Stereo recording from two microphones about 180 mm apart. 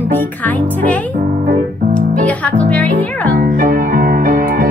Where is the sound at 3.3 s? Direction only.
55° right (ahead or behind).